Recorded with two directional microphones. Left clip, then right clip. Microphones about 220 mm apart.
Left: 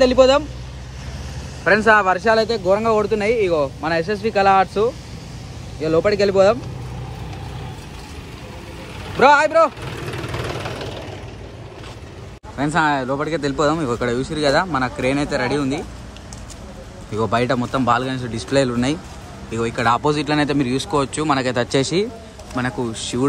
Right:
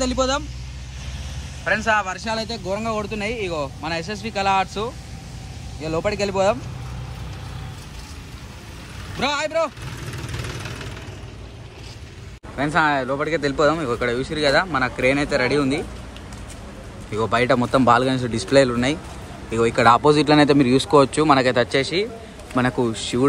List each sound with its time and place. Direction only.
0.0 s speech: centre (ahead or behind)
2.2 s speech: centre (ahead or behind)
9.1 s speech: centre (ahead or behind)
12.7 s speech: 15° left (ahead or behind)
17.1 s speech: 20° left (ahead or behind)
22.6 s speech: 10° left (ahead or behind)